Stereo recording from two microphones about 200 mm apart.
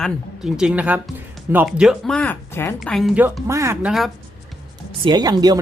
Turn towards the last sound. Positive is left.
turn(degrees=-20)  # may be behind; listen again after turning